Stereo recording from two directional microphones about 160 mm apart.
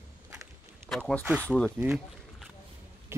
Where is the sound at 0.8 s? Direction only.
5° left (ahead or behind).